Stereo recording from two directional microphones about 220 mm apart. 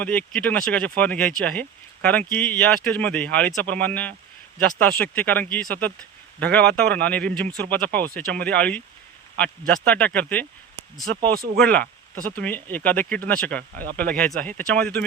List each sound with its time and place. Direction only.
0.0 s speech: 5° left (ahead or behind)
11.3 s speech: 45° right (ahead or behind)
11.6 s speech: 5° left (ahead or behind)